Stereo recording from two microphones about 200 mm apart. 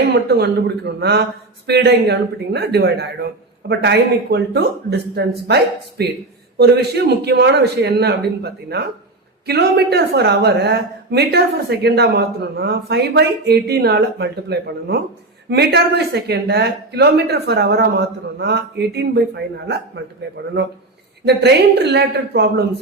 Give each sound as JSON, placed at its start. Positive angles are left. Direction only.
{"t": 0.1, "sound": "speech", "side_deg": -55}
{"t": 21.2, "sound": "speech", "side_deg": -55}